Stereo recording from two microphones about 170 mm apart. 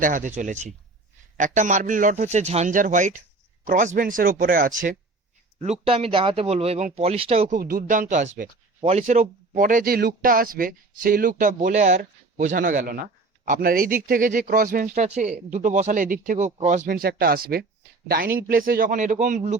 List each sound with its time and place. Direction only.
0.0 s a man's voice: 50° right (ahead or behind)
5.8 s speech: 35° right (ahead or behind)
7.5 s a man's voice: 55° right (ahead or behind)